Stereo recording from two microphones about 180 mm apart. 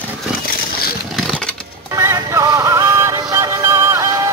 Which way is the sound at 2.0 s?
15° right (ahead or behind).